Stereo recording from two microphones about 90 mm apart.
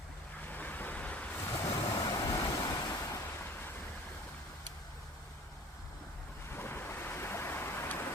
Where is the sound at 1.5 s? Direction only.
35° left (ahead or behind).